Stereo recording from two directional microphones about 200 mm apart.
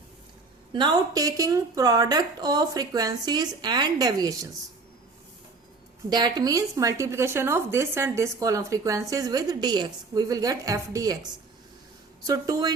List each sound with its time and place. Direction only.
0.7 s speech: 20° right (ahead or behind)
6.1 s speech: 20° right (ahead or behind)
12.2 s speech: 20° right (ahead or behind)